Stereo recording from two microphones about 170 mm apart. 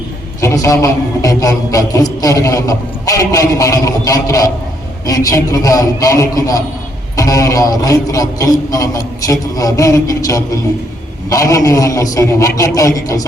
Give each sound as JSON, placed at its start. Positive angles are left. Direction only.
{"t": 0.4, "sound": "a man's voice", "side_deg": 15}